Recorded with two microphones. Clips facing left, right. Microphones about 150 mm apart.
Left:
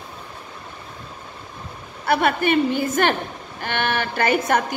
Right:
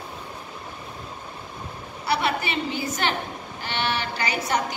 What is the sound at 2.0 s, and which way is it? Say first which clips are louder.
A woman's voice: left 6 dB; 50° left (ahead or behind).